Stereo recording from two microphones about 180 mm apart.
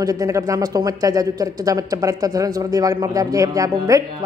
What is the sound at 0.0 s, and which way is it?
Speech, 20° right (ahead or behind).